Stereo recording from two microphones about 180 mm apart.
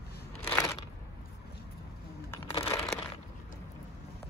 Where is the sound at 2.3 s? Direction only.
15° left (ahead or behind).